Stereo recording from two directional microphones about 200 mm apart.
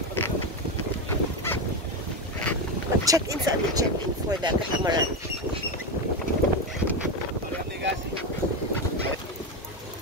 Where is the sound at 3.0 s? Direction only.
15° right (ahead or behind).